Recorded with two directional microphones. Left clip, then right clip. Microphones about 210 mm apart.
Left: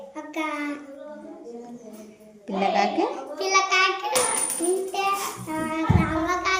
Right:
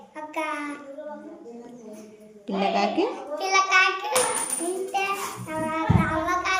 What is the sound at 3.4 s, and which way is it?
Child singing, 15° right (ahead or behind).